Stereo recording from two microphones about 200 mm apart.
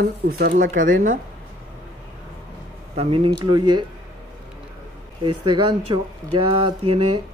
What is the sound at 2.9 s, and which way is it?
Speech, 30° right (ahead or behind).